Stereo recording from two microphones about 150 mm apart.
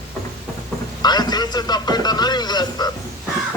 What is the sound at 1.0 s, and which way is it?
A man's voice, 25° left (ahead or behind).